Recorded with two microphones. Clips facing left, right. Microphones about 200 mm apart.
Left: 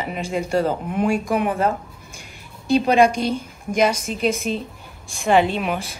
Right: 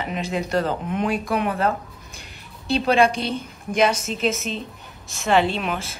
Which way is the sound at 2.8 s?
15° left (ahead or behind).